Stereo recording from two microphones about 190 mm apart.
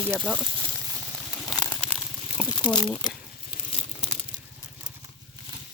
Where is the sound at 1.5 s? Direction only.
5° left (ahead or behind).